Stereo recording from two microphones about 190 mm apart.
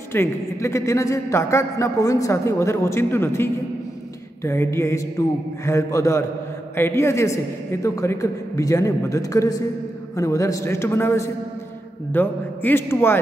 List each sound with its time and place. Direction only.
0.1 s a man's voice: 15° left (ahead or behind)
4.5 s a man's voice: 15° left (ahead or behind)